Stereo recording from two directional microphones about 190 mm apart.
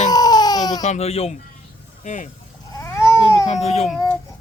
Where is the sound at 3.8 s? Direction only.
5° left (ahead or behind).